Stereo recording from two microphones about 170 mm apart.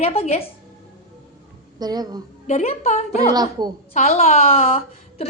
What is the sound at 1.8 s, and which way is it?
Speech, 25° right (ahead or behind).